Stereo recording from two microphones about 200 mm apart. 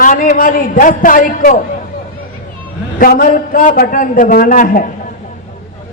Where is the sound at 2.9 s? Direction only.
45° left (ahead or behind).